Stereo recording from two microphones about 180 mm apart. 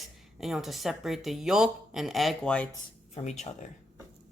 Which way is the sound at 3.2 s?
40° left (ahead or behind).